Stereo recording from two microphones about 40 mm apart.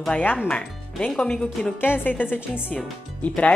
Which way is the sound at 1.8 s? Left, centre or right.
Left.